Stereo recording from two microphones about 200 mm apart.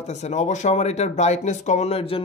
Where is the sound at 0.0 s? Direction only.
35° left (ahead or behind).